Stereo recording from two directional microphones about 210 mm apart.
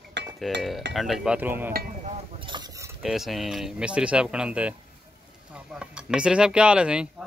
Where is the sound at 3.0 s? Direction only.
Centre (ahead or behind).